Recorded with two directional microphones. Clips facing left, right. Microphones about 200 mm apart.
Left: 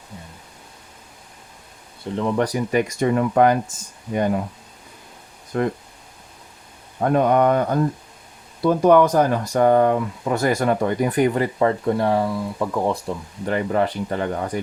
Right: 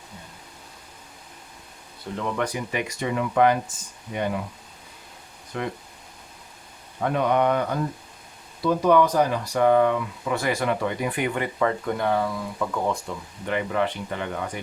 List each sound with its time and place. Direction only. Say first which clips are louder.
2.1 s speech: left 6 dB; 30° left (ahead or behind); by 3.6 s 45° left (ahead or behind)
5.5 s speech: left 8 dB; 45° left (ahead or behind)
7.0 s speech: left 5 dB; 45° left (ahead or behind)